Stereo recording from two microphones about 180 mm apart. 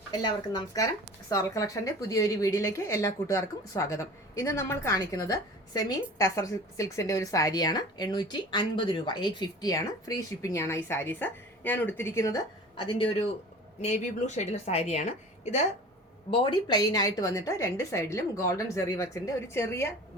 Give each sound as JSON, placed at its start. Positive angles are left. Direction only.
{"t": 0.1, "sound": "a woman's voice", "side_deg": 25}
{"t": 12.8, "sound": "speech", "side_deg": 30}
{"t": 13.8, "sound": "speech", "side_deg": 40}
{"t": 16.3, "sound": "a woman's voice", "side_deg": 30}